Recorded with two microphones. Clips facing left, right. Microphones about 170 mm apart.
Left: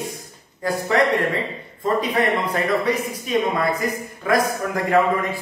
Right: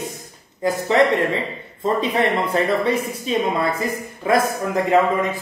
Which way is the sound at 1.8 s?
25° right (ahead or behind).